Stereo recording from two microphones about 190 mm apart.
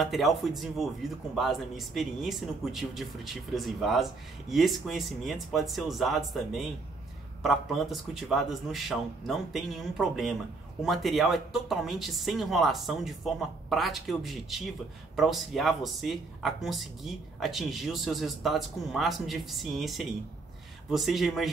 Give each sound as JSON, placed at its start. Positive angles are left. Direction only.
{"t": 0.0, "sound": "speech", "side_deg": 0}